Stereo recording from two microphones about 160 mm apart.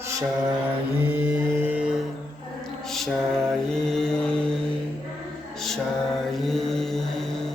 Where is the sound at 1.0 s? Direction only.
10° right (ahead or behind).